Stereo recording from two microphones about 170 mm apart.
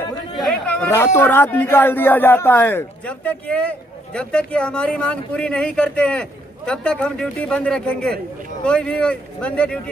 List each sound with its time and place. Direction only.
0.4 s speech: 5° left (ahead or behind)